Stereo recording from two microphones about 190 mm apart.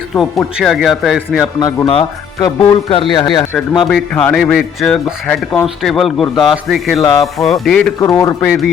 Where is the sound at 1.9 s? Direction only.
30° left (ahead or behind).